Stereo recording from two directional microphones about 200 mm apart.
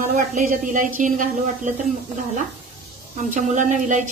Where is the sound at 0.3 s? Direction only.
40° right (ahead or behind).